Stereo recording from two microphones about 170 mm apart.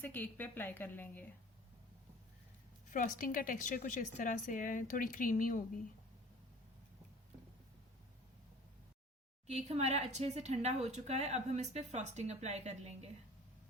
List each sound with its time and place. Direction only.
0.0 s a woman's voice: 10° left (ahead or behind)
2.9 s a woman's voice: 50° left (ahead or behind)
9.5 s speech: 40° right (ahead or behind)